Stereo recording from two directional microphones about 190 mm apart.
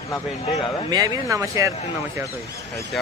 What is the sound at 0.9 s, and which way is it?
Speech, 20° right (ahead or behind).